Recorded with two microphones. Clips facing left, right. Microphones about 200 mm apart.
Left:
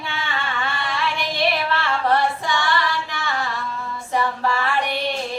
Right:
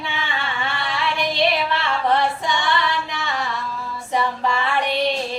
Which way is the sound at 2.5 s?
15° right (ahead or behind).